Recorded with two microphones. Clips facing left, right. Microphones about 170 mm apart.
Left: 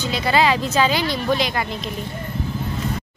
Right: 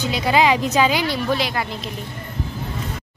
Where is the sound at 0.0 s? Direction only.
10° right (ahead or behind).